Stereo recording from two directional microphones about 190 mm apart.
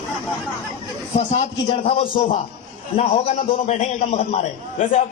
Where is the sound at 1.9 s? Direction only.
35° left (ahead or behind).